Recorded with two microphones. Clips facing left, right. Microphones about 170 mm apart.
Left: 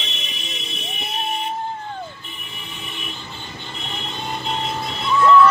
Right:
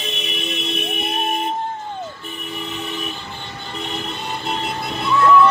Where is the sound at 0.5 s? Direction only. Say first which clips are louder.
Right 10 dB; 65° right (ahead or behind).